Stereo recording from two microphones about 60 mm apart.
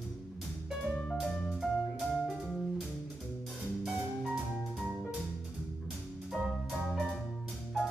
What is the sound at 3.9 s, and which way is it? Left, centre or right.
Music, centre.